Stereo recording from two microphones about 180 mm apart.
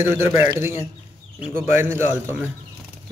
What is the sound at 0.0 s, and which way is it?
Speech, 10° right (ahead or behind).